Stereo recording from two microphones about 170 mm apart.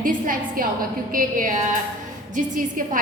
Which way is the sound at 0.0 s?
55° right (ahead or behind).